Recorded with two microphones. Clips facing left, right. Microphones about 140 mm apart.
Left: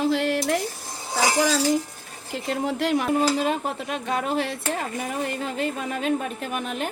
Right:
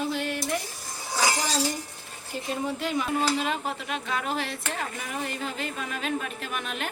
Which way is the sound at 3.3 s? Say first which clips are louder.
Left 4 dB; 40° left (ahead or behind).